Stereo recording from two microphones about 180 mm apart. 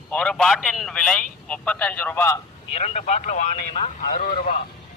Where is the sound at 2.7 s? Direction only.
35° left (ahead or behind).